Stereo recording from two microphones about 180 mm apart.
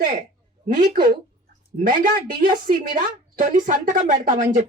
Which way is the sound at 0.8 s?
55° right (ahead or behind).